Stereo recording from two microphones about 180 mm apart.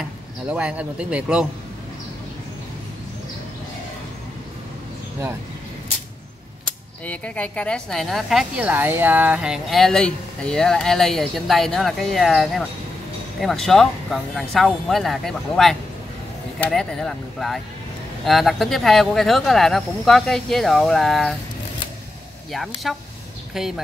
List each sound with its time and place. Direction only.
0.5 s speech: 5° right (ahead or behind)
7.1 s a woman's voice: 5° left (ahead or behind)
22.8 s a woman's voice: centre (ahead or behind)